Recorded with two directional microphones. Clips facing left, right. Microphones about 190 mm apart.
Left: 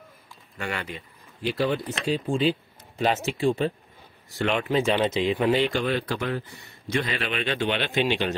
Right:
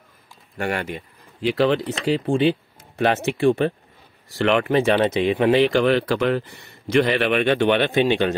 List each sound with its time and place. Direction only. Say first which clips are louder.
0.6 s speech: right 7 dB; 55° right (ahead or behind)
4.4 s a man's voice: right 5 dB; 75° right (ahead or behind); by 8.4 s 55° right (ahead or behind)